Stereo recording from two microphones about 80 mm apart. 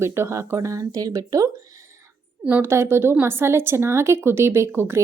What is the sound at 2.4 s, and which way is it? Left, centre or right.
A woman's voice, right.